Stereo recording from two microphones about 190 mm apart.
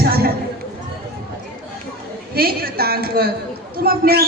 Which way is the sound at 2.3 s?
55° right (ahead or behind).